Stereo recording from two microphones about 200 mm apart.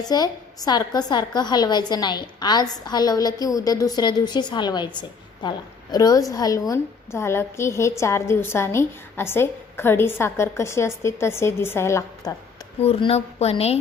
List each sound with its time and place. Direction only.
0.0 s a woman's voice: 20° left (ahead or behind)
12.8 s a woman's voice: 30° left (ahead or behind)